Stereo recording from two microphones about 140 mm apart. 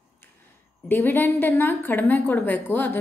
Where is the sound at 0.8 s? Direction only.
15° left (ahead or behind).